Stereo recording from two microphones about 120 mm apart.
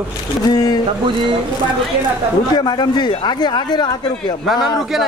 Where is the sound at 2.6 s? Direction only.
35° left (ahead or behind).